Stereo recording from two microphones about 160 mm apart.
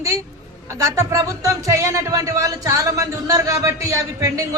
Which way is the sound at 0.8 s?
20° right (ahead or behind).